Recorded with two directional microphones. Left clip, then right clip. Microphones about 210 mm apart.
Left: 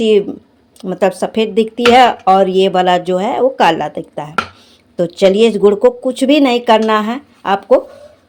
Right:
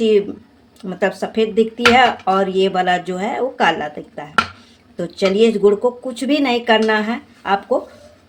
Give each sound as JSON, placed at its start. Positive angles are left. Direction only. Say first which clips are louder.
{"t": 0.0, "sound": "speech", "louder": "left 3 dB", "side_deg": 30}